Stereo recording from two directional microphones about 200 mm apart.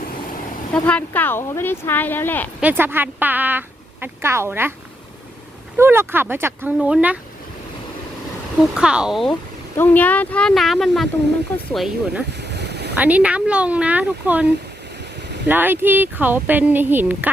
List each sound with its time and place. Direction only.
0.7 s speech: 5° left (ahead or behind)
2.6 s speech: 10° right (ahead or behind)
5.7 s speech: 10° right (ahead or behind)
8.7 s speech: 5° right (ahead or behind)
9.7 s speech: 10° left (ahead or behind)
12.4 s boat: 55° right (ahead or behind)
13.0 s speech: 5° right (ahead or behind)
15.4 s speech: 10° right (ahead or behind)